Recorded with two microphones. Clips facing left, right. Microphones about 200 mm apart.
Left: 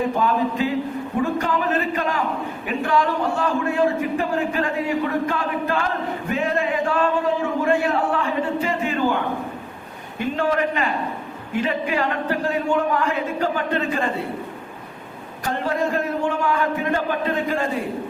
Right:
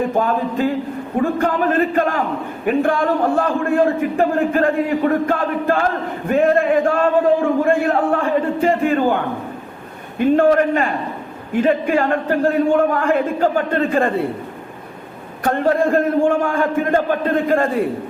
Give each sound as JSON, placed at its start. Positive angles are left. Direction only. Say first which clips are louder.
{"t": 0.1, "sound": "a man's voice", "louder": "right 2 dB", "side_deg": -50}
{"t": 6.2, "sound": "a sound", "louder": "right 9 dB", "side_deg": -50}
{"t": 10.2, "sound": "a man's voice", "louder": "right 8 dB", "side_deg": -50}
{"t": 15.4, "sound": "a man's voice", "louder": "right 7 dB", "side_deg": -55}